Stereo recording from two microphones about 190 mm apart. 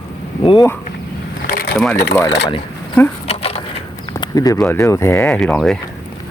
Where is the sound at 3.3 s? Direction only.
30° left (ahead or behind).